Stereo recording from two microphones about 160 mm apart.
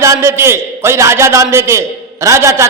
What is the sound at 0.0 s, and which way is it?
A man's voice, 20° right (ahead or behind).